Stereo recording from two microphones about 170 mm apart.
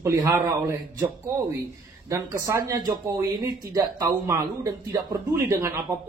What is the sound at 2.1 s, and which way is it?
Speech, 20° right (ahead or behind).